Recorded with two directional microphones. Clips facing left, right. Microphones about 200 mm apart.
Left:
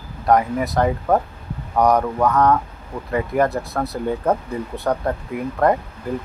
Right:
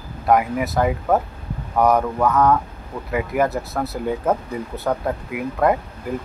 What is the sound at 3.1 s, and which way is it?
Speech, 5° right (ahead or behind).